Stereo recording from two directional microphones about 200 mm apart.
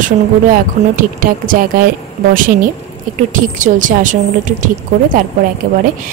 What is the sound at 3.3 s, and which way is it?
A woman's voice, 40° right (ahead or behind).